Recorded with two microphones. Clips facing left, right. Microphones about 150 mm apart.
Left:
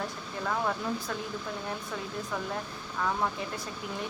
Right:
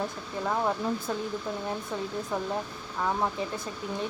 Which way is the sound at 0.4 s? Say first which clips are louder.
Right 3 dB; 20° right (ahead or behind).